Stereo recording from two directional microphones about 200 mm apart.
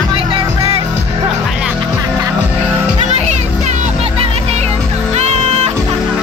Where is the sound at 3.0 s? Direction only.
35° right (ahead or behind).